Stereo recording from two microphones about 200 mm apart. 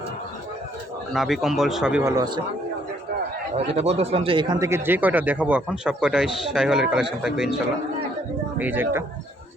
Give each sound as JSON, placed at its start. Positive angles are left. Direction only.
{"t": 1.1, "sound": "speech", "side_deg": 0}
{"t": 2.1, "sound": "speech", "side_deg": -20}
{"t": 3.5, "sound": "speech", "side_deg": -30}
{"t": 8.5, "sound": "speech", "side_deg": -10}